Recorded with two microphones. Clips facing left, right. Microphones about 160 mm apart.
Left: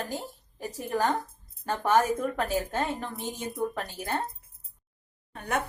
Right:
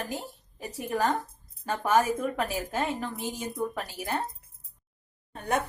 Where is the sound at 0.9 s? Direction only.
10° right (ahead or behind).